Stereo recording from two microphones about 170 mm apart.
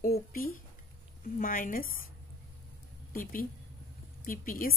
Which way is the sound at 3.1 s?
55° left (ahead or behind).